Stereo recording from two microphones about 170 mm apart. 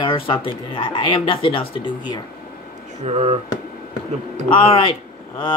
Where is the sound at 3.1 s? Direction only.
35° right (ahead or behind).